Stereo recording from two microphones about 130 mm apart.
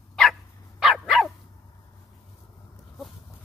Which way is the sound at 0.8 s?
Centre (ahead or behind).